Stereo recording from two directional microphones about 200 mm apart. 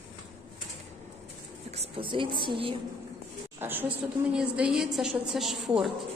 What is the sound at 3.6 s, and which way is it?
A woman's voice, 10° right (ahead or behind).